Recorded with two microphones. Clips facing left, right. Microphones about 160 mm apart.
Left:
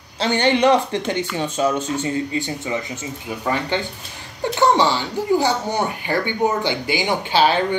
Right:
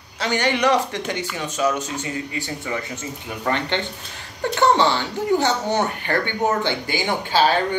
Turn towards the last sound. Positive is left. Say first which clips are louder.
# left 1 dB
turn(degrees=15)  # may be behind; listen again after turning